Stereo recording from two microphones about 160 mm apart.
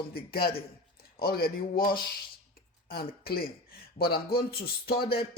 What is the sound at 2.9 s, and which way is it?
A man's voice, 70° left (ahead or behind).